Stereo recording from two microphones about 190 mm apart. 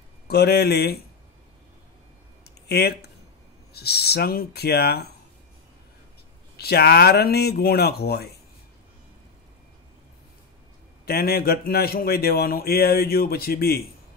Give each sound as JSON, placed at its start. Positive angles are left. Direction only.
{"t": 0.3, "sound": "speech", "side_deg": 60}
{"t": 2.7, "sound": "speech", "side_deg": 60}
{"t": 6.5, "sound": "speech", "side_deg": 55}
{"t": 11.1, "sound": "a man's voice", "side_deg": 55}